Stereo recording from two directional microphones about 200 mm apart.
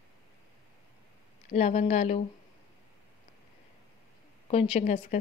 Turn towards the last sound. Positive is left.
turn(degrees=35)  # may be behind; listen again after turning